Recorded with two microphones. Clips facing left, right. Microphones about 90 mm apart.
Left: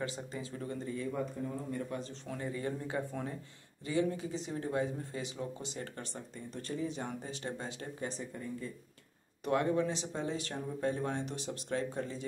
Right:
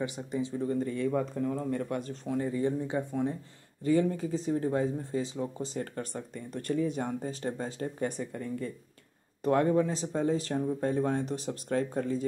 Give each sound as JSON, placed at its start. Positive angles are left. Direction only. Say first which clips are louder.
{"t": 0.0, "sound": "speech", "louder": "right 7 dB", "side_deg": -20}
{"t": 0.8, "sound": "speech", "louder": "right 7 dB", "side_deg": -65}
{"t": 2.2, "sound": "speech", "louder": "right 10 dB", "side_deg": -30}
{"t": 3.8, "sound": "speech", "louder": "right 6 dB", "side_deg": -45}
{"t": 6.3, "sound": "speech", "louder": "right 9 dB", "side_deg": -50}
{"t": 8.1, "sound": "speech", "louder": "right 5 dB", "side_deg": -60}
{"t": 9.4, "sound": "speech", "louder": "right 5 dB", "side_deg": -40}